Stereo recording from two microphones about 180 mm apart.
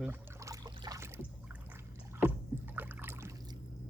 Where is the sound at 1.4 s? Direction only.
10° right (ahead or behind).